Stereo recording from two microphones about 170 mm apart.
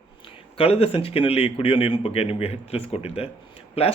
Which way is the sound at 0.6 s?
35° left (ahead or behind).